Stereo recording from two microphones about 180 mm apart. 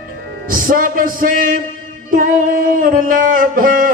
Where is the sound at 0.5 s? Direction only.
50° right (ahead or behind).